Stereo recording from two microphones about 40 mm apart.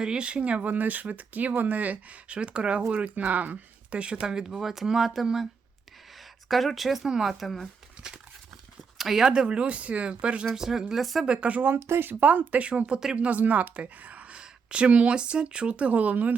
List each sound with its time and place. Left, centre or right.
0.0 s speech: right
0.6 s speech: right
4.2 s speech: centre
6.5 s speech: centre
8.0 s a sound: centre
9.0 s a sound: centre
9.2 s speech: right
10.5 s speech: centre
11.3 s speech: right
11.6 s speech: right
12.2 s speech: right